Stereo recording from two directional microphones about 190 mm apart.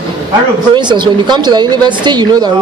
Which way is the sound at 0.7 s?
25° right (ahead or behind).